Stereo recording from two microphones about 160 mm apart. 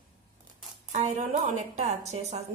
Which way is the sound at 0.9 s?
50° right (ahead or behind).